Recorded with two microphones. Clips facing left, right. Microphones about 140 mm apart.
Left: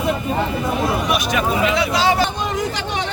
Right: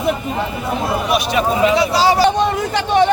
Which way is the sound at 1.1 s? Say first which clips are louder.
Right 3 dB; 30° right (ahead or behind).